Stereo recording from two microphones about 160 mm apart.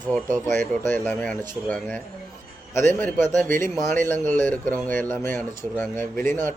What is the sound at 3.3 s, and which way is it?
Speech, 55° right (ahead or behind).